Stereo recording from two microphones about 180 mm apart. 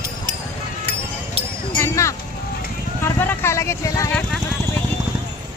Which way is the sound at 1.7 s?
15° left (ahead or behind).